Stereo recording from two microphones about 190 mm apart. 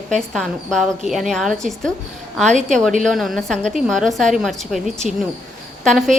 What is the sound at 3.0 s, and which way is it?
A woman's voice, centre (ahead or behind).